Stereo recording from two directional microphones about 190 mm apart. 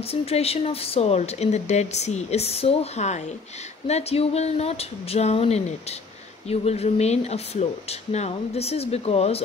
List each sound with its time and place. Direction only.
0.0 s speech: 30° left (ahead or behind)